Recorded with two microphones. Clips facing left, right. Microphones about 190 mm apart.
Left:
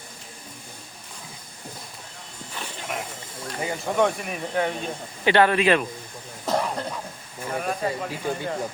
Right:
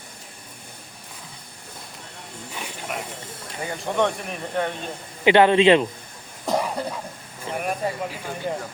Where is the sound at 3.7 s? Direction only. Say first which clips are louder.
Even; 5° left (ahead or behind).